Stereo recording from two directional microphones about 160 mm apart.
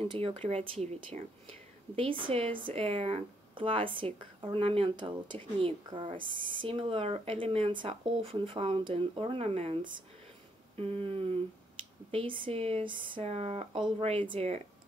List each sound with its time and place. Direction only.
0.1 s speech: 35° right (ahead or behind)